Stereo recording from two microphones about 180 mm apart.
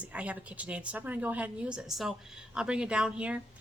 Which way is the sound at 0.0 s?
5° right (ahead or behind).